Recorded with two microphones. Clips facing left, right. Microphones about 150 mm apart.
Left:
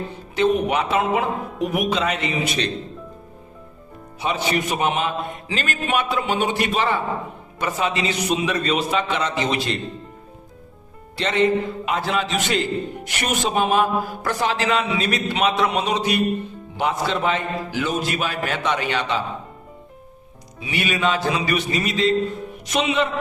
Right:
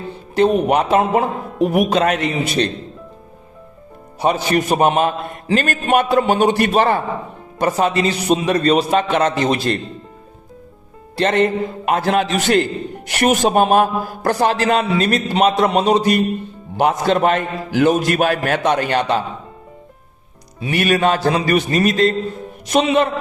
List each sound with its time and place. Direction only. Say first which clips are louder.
0.3 s a man's voice: right 5 dB; 45° right (ahead or behind)
4.2 s a man's voice: right 6 dB; 45° right (ahead or behind)
9.0 s a man's voice: right 6 dB; 50° right (ahead or behind)
11.2 s a man's voice: right 3 dB; 50° right (ahead or behind)
13.1 s a man's voice: right 10 dB; 45° right (ahead or behind)
20.7 s a man's voice: right 6 dB; 50° right (ahead or behind)